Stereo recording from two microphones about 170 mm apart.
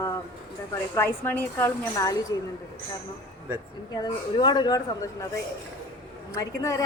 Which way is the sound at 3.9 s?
25° left (ahead or behind).